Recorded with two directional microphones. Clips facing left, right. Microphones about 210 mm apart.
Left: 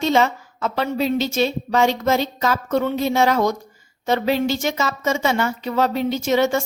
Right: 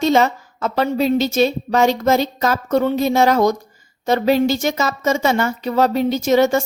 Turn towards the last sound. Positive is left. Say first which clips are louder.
# right 4 dB
turn(degrees=-40)  # may be behind; listen again after turning